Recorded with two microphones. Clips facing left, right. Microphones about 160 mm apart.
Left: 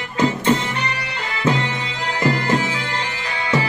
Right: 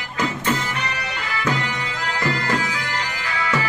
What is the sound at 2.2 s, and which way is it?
Music, 25° left (ahead or behind).